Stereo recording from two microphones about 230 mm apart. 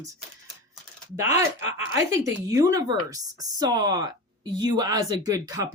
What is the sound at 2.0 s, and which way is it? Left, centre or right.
Speech, centre.